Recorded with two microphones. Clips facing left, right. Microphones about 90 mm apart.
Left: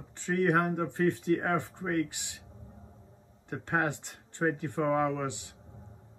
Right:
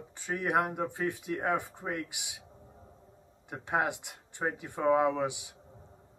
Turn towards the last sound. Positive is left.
turn(degrees=-15)  # may be behind; listen again after turning